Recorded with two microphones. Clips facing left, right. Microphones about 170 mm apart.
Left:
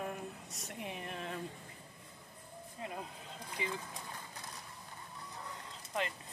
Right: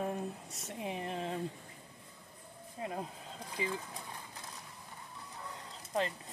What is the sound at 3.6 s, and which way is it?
Speech, 35° right (ahead or behind).